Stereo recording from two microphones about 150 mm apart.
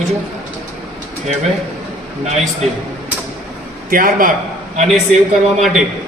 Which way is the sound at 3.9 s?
70° right (ahead or behind).